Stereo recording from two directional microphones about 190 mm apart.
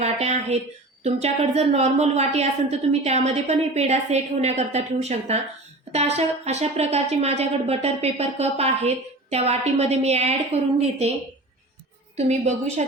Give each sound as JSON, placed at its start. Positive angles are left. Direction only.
{"t": 0.0, "sound": "a woman's voice", "side_deg": -35}
{"t": 12.1, "sound": "a woman's voice", "side_deg": -35}